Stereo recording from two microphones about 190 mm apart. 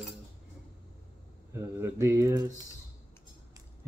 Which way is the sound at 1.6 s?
15° right (ahead or behind).